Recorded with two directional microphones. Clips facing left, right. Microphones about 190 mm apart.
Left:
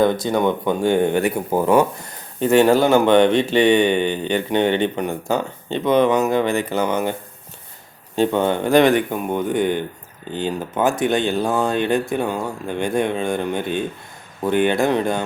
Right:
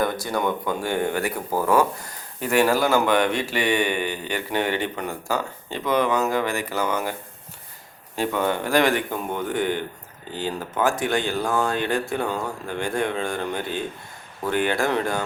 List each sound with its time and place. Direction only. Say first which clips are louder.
0.0 s speech: left 7 dB; 20° left (ahead or behind)